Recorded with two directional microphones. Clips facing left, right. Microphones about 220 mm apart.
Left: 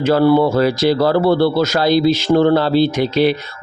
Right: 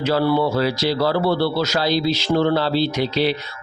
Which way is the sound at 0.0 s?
50° left (ahead or behind).